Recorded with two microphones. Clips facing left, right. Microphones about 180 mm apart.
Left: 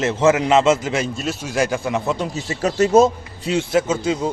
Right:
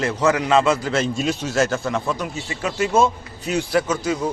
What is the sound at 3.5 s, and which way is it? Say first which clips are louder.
Speech: left 2 dB; 20° left (ahead or behind).